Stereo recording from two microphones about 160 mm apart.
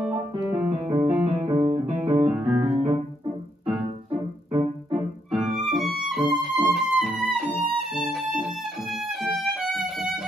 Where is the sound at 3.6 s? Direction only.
10° right (ahead or behind).